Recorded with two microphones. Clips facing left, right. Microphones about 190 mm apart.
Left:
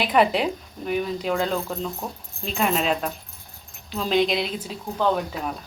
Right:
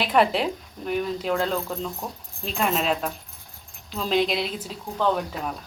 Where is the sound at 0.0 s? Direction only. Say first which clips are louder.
Left 1 dB; centre (ahead or behind).